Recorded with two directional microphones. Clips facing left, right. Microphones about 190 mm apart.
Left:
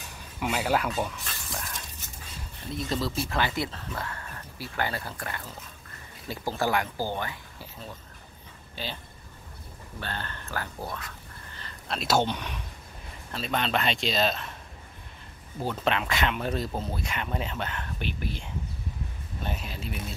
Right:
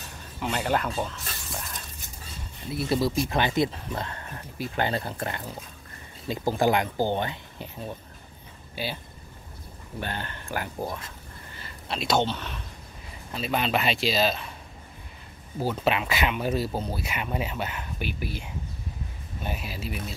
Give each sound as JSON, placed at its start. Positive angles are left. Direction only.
{"t": 0.4, "sound": "speech", "side_deg": 5}
{"t": 9.9, "sound": "speech", "side_deg": -15}
{"t": 11.6, "sound": "speech", "side_deg": 0}
{"t": 13.3, "sound": "speech", "side_deg": -5}
{"t": 15.6, "sound": "speech", "side_deg": -5}